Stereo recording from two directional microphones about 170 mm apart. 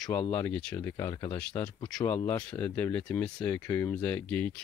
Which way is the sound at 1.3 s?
5° left (ahead or behind).